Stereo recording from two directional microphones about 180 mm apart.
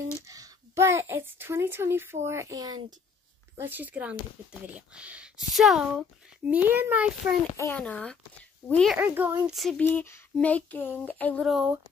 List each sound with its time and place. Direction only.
0.3 s a child's voice: 15° right (ahead or behind)
7.5 s speech: 15° left (ahead or behind)
8.9 s speech: 10° right (ahead or behind)